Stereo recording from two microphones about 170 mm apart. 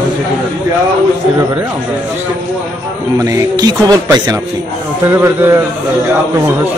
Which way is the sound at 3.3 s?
25° right (ahead or behind).